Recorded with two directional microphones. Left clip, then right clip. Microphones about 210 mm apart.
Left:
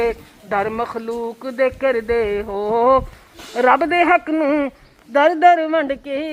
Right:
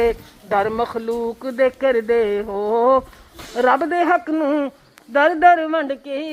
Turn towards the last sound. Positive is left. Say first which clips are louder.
# left 2 dB
turn(degrees=10)  # may be behind; listen again after turning